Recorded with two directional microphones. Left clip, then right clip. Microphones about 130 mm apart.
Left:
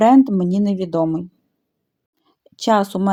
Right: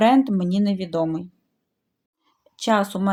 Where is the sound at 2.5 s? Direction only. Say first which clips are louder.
Left 4 dB; 45° left (ahead or behind).